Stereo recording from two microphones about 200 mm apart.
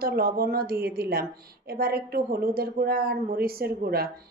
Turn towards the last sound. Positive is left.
turn(degrees=-50)  # may be behind; listen again after turning